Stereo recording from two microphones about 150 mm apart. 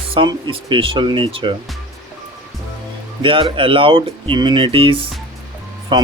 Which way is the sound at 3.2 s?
35° right (ahead or behind).